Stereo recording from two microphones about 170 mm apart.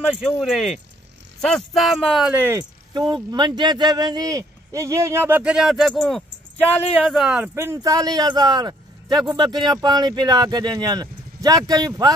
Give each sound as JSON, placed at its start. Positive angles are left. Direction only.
{"t": 0.1, "sound": "speech", "side_deg": 0}
{"t": 2.3, "sound": "speech", "side_deg": -10}
{"t": 2.9, "sound": "speech", "side_deg": -25}